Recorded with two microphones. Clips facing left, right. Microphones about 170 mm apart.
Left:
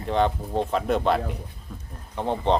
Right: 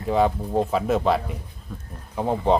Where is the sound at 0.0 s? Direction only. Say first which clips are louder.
Right 2 dB; 5° right (ahead or behind).